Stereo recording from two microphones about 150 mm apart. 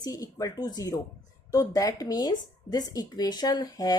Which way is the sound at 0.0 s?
25° left (ahead or behind).